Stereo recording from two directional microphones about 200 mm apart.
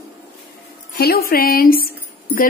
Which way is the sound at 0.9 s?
50° left (ahead or behind).